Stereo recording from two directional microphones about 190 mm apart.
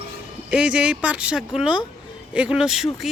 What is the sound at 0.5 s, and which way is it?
Speech, 5° right (ahead or behind).